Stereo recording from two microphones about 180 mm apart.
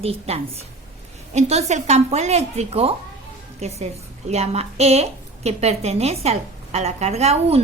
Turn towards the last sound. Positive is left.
turn(degrees=-35)  # may be behind; listen again after turning